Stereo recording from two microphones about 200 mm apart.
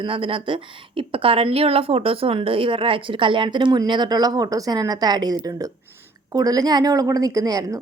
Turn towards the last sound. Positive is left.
turn(degrees=-20)  # may be behind; listen again after turning